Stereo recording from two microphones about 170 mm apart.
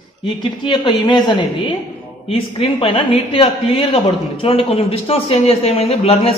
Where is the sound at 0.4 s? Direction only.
25° left (ahead or behind).